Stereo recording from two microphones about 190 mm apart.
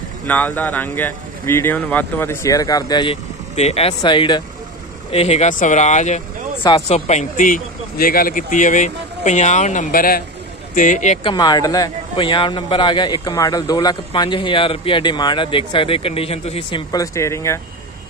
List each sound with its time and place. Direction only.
0.3 s speech: 10° left (ahead or behind); by 11.1 s 40° left (ahead or behind)
11.2 s a man's voice: 20° left (ahead or behind)
16.9 s speech: 15° left (ahead or behind)